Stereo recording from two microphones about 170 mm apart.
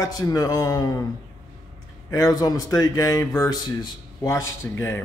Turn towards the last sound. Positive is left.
turn(degrees=15)  # may be behind; listen again after turning